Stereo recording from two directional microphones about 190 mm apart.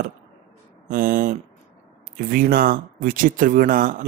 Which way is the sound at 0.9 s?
50° right (ahead or behind).